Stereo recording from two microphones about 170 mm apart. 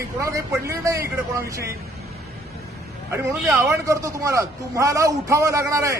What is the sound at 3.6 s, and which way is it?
A man's voice, 20° right (ahead or behind).